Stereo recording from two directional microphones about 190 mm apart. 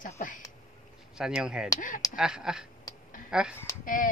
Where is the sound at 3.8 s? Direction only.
45° left (ahead or behind).